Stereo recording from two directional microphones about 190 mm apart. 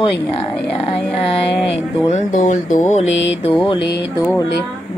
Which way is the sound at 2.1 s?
40° left (ahead or behind).